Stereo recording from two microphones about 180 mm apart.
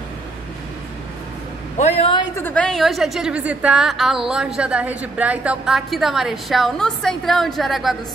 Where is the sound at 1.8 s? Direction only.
35° left (ahead or behind).